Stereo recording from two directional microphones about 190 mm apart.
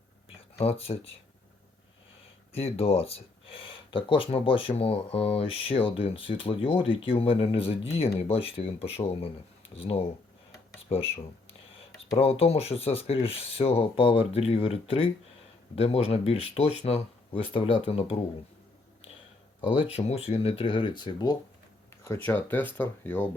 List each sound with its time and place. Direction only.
0.6 s speech: 30° left (ahead or behind)
2.5 s speech: 30° left (ahead or behind)
19.9 s speech: 35° left (ahead or behind)
22.3 s speech: 10° left (ahead or behind)